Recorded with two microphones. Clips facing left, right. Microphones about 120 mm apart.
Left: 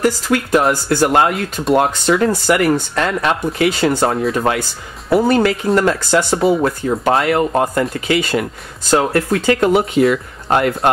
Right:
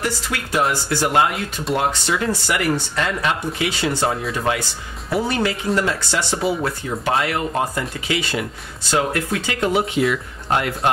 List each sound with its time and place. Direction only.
0.0 s speech: 45° left (ahead or behind)
9.6 s speech: 50° left (ahead or behind)